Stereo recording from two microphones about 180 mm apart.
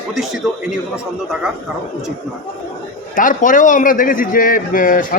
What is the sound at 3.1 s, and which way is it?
A man's voice, 45° left (ahead or behind).